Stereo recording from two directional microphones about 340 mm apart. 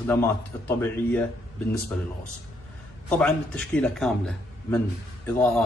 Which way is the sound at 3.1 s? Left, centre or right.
Centre.